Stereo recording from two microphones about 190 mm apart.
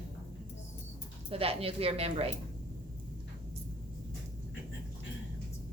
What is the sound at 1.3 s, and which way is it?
A woman's voice, 30° right (ahead or behind).